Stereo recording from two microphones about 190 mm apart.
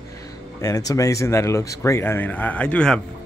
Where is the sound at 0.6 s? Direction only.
15° left (ahead or behind).